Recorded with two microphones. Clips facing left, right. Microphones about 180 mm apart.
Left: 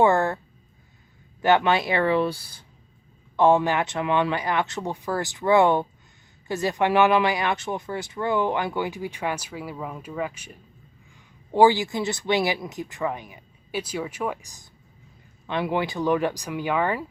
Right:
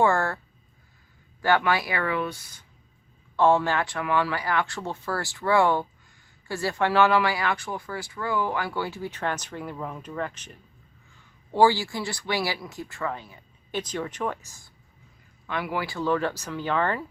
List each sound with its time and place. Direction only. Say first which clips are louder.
0.0 s speech: left 3 dB; 20° left (ahead or behind)
1.4 s speech: left 3 dB; 20° left (ahead or behind)
3.3 s speech: left 2 dB; 20° left (ahead or behind)